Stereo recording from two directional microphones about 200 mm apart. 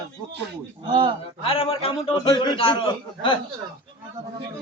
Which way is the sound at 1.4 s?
30° left (ahead or behind).